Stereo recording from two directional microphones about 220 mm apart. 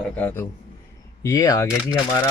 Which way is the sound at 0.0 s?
5° left (ahead or behind).